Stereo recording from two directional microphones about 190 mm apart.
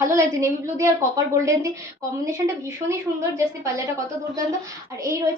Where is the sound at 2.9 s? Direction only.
15° right (ahead or behind).